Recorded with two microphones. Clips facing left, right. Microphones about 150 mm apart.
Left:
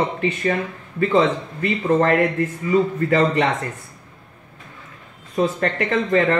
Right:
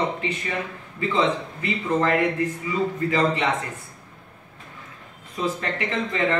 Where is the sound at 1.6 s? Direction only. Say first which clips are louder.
Left 7 dB; 50° left (ahead or behind).